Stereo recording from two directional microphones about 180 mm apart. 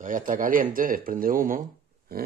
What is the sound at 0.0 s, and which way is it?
Speech, 45° right (ahead or behind).